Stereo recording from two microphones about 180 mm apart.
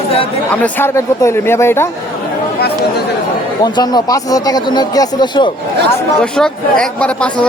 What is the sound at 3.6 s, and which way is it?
Speech, 20° left (ahead or behind).